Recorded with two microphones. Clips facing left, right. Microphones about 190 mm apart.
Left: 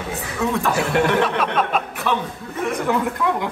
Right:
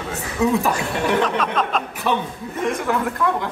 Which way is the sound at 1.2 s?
10° left (ahead or behind).